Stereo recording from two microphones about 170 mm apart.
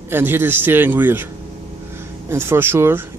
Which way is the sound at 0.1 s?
15° right (ahead or behind).